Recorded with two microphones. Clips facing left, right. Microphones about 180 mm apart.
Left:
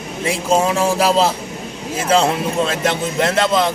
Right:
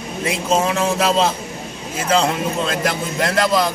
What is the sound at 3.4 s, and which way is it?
Speech, centre (ahead or behind).